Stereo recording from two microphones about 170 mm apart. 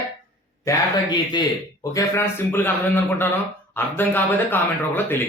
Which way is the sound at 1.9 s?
15° left (ahead or behind).